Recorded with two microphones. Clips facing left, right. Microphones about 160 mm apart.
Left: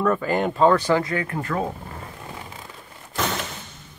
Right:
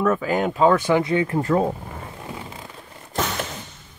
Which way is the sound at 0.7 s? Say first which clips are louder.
Right 2 dB; 20° right (ahead or behind).